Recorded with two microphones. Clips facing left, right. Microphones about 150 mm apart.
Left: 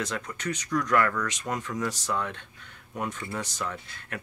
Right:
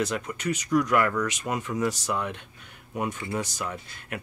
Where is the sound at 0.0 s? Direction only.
10° right (ahead or behind).